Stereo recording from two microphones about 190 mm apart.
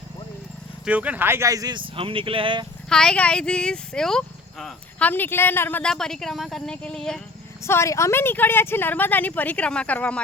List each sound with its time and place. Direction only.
0.9 s speech: 5° right (ahead or behind); by 2.6 s 25° right (ahead or behind)
2.9 s speech: 5° left (ahead or behind)
7.6 s speech: 15° left (ahead or behind)